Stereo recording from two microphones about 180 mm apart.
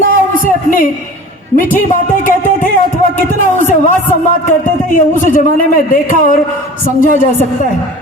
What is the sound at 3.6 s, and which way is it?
A man's voice, 45° left (ahead or behind).